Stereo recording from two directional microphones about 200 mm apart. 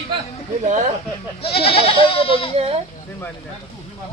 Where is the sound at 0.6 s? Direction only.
40° right (ahead or behind).